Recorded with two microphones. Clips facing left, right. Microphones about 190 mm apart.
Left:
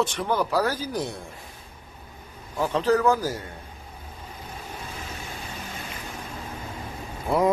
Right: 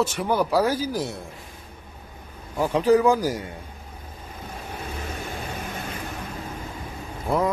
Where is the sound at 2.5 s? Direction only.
10° right (ahead or behind).